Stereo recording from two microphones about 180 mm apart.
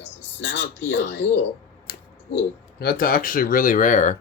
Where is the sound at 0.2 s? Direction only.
85° left.